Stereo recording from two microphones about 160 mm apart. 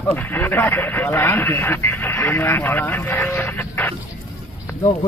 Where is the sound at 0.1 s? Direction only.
10° left (ahead or behind).